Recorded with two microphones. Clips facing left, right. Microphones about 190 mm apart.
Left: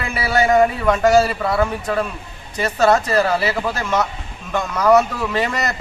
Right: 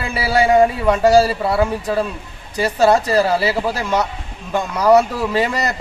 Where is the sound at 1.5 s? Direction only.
10° right (ahead or behind).